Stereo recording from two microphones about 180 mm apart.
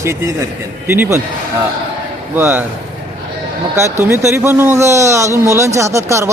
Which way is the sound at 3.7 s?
15° right (ahead or behind).